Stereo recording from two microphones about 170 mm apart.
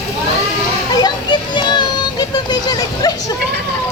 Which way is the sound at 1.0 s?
25° left (ahead or behind).